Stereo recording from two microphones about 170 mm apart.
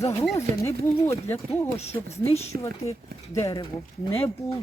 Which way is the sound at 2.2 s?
35° left (ahead or behind).